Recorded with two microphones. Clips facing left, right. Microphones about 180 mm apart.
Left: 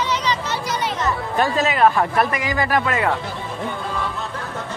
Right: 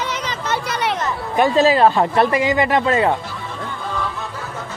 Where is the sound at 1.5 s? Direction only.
30° right (ahead or behind).